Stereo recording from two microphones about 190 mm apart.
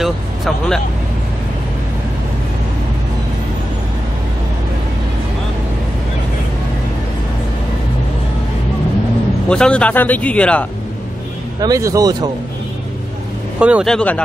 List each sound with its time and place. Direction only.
0.0 s speech: centre (ahead or behind)
9.5 s speech: 5° left (ahead or behind)
11.6 s speech: 20° right (ahead or behind)
13.6 s speech: 5° right (ahead or behind)